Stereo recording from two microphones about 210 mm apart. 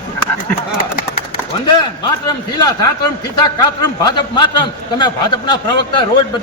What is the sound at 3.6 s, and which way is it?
A man's voice, 20° left (ahead or behind).